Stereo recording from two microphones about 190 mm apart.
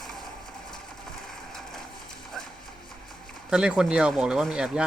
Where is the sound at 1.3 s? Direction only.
Centre (ahead or behind).